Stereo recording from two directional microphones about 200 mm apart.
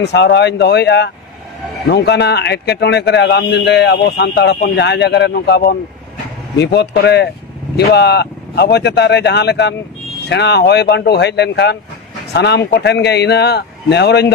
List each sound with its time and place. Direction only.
0.0 s a man's voice: 60° left (ahead or behind)